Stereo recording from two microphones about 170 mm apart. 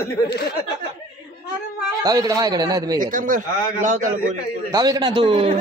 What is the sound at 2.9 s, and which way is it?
A man's voice, 50° right (ahead or behind).